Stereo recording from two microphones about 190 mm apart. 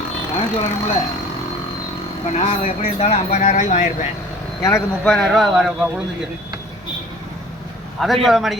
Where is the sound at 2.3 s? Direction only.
35° left (ahead or behind).